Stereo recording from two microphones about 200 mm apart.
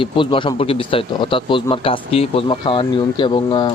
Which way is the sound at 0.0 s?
25° left (ahead or behind).